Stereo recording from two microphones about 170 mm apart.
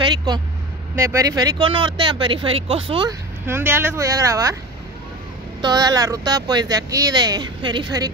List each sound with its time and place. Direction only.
0.0 s vehicle: 25° right (ahead or behind)
0.9 s speech: 20° right (ahead or behind)
3.1 s speech: 15° right (ahead or behind)
5.6 s speech: 25° right (ahead or behind)